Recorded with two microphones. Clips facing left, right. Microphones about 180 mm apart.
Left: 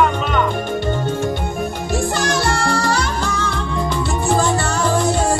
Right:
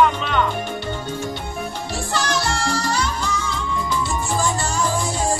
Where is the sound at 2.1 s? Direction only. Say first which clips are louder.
Left 4 dB; 55° left (ahead or behind).